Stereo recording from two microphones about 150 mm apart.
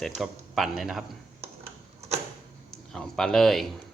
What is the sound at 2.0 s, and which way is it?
Tick-tock, 45° right (ahead or behind).